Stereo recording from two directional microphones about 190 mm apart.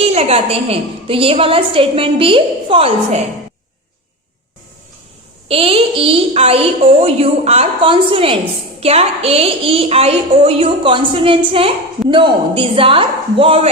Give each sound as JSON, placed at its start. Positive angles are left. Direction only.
{"t": 0.0, "sound": "a woman's voice", "side_deg": -30}
{"t": 5.5, "sound": "a woman's voice", "side_deg": -30}